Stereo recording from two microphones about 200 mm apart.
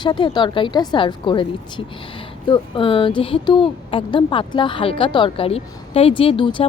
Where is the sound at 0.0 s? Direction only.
20° left (ahead or behind).